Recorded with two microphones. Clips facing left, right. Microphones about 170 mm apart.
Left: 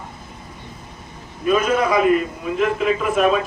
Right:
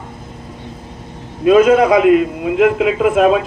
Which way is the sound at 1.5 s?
75° right (ahead or behind).